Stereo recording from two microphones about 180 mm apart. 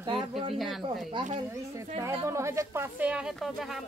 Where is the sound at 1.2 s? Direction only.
25° right (ahead or behind).